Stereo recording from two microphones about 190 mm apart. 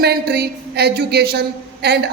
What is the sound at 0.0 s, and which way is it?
A woman's voice, 60° right (ahead or behind).